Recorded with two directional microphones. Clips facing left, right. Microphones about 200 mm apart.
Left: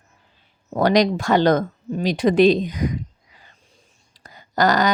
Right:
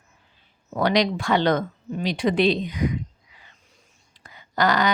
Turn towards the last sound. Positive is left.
turn(degrees=40)  # may be behind; listen again after turning